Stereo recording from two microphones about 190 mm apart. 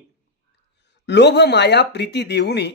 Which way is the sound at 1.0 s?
65° left (ahead or behind).